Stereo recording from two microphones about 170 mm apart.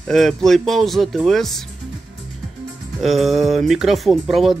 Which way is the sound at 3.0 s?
Centre (ahead or behind).